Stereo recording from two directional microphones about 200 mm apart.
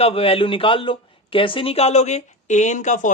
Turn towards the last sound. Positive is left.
turn(degrees=40)  # may be behind; listen again after turning